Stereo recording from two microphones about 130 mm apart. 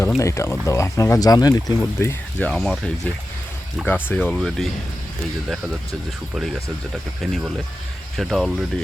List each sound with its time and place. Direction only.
0.2 s speech: 25° left (ahead or behind)
2.5 s speech: 5° left (ahead or behind)
3.8 s speech: 15° left (ahead or behind)
6.3 s speech: 5° right (ahead or behind)